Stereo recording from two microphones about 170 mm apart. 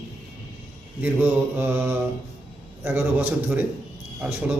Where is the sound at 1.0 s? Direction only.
10° right (ahead or behind).